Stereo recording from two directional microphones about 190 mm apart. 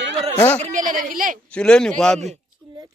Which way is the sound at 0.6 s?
40° right (ahead or behind).